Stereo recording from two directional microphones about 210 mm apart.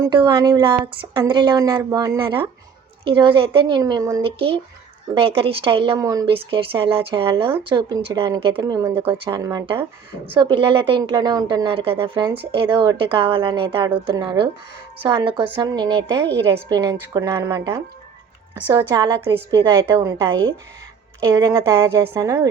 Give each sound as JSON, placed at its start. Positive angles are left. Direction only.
{"t": 0.0, "sound": "a woman's voice", "side_deg": -20}